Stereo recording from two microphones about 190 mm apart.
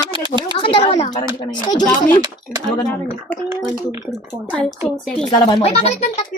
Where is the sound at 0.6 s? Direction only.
30° left (ahead or behind).